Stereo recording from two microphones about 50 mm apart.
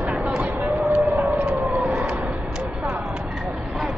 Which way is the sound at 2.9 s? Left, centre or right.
Centre.